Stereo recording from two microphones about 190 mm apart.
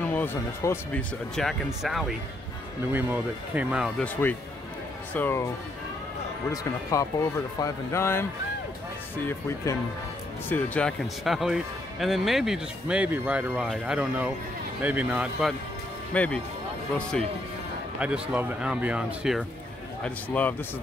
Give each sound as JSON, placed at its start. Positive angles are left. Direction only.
{"t": 0.0, "sound": "speech", "side_deg": 10}
{"t": 1.3, "sound": "speech", "side_deg": 0}
{"t": 4.0, "sound": "speech", "side_deg": 10}
{"t": 6.5, "sound": "speech", "side_deg": 15}
{"t": 10.5, "sound": "speech", "side_deg": 5}
{"t": 16.1, "sound": "speech", "side_deg": 5}
{"t": 17.9, "sound": "speech", "side_deg": -5}
{"t": 20.0, "sound": "speech", "side_deg": 10}